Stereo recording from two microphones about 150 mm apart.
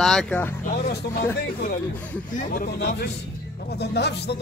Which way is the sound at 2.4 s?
70° left (ahead or behind).